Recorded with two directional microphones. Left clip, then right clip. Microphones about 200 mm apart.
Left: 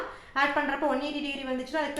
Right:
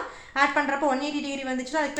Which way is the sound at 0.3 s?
25° right (ahead or behind).